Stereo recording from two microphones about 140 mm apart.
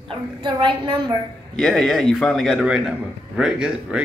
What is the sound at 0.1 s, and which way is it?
A woman's voice, 35° right (ahead or behind).